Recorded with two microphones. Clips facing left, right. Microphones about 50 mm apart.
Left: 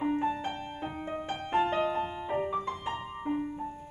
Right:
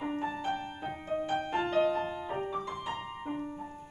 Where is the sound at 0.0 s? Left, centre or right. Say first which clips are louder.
Left 4 dB; centre.